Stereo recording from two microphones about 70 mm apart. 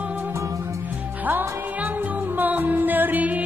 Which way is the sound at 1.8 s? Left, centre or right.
Right.